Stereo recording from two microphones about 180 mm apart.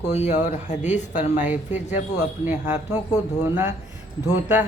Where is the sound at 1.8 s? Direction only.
40° left (ahead or behind).